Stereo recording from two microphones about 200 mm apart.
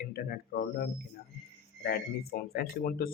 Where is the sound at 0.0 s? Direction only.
50° left (ahead or behind).